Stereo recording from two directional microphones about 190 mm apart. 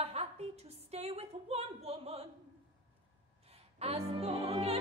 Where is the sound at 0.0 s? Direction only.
35° right (ahead or behind).